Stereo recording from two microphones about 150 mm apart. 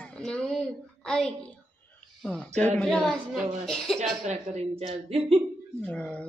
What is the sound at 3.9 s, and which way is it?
A woman's voice, 50° right (ahead or behind).